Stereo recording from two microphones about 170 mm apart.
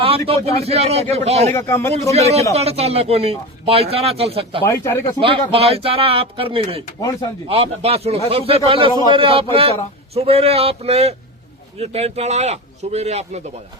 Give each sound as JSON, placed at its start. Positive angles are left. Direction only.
{"t": 0.0, "sound": "speech", "side_deg": -35}
{"t": 1.5, "sound": "speech", "side_deg": 15}
{"t": 2.5, "sound": "speech", "side_deg": -40}
{"t": 4.6, "sound": "speech", "side_deg": 15}
{"t": 5.2, "sound": "speech", "side_deg": -35}